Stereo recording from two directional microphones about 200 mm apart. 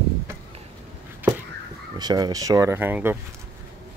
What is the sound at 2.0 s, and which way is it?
Speech, 20° right (ahead or behind).